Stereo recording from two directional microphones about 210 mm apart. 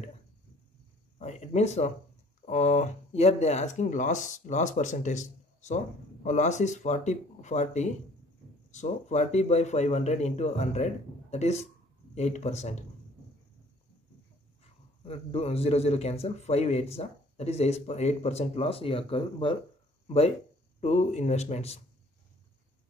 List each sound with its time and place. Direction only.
1.1 s speech: 30° left (ahead or behind)
14.6 s a man's voice: 30° left (ahead or behind)